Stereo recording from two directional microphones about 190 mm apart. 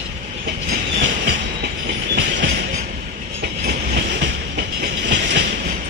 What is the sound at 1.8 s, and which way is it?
Train, 65° right (ahead or behind).